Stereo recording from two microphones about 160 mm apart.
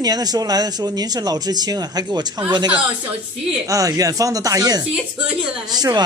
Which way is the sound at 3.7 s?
20° right (ahead or behind).